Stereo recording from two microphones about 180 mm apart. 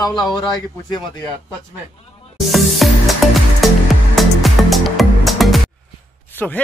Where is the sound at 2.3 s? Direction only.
Centre (ahead or behind).